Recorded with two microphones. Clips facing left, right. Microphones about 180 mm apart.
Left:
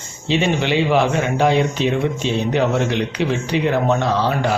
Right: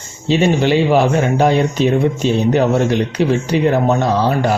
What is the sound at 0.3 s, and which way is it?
A man's voice, 40° right (ahead or behind).